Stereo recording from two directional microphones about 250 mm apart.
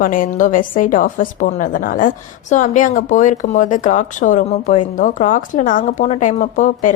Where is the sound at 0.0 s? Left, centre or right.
Left.